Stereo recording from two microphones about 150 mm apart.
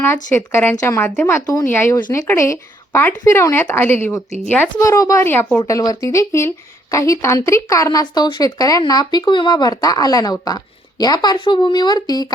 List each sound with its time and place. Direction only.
0.3 s speech: 15° left (ahead or behind)